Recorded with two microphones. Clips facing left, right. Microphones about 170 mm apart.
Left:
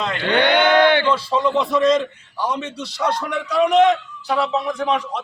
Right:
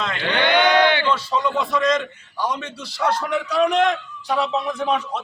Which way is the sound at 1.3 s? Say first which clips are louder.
Left 3 dB; 30° left (ahead or behind).